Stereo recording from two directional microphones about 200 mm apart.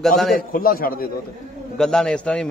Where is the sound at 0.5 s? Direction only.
45° left (ahead or behind).